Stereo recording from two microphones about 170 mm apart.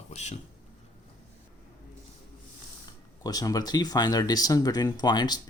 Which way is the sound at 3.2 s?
20° left (ahead or behind).